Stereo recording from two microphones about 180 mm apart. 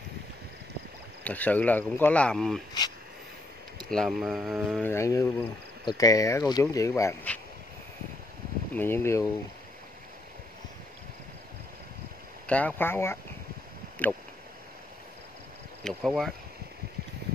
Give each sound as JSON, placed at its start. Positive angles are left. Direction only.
{"t": 1.2, "sound": "speech", "side_deg": 10}
{"t": 3.9, "sound": "speech", "side_deg": 0}
{"t": 4.8, "sound": "speech", "side_deg": 15}
{"t": 8.7, "sound": "speech", "side_deg": 10}
{"t": 12.4, "sound": "speech", "side_deg": 10}
{"t": 15.8, "sound": "speech", "side_deg": 5}